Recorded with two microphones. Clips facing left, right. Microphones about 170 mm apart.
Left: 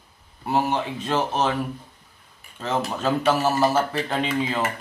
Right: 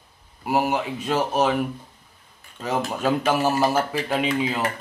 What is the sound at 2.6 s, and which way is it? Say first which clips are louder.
Speech: right 1 dB; 10° right (ahead or behind).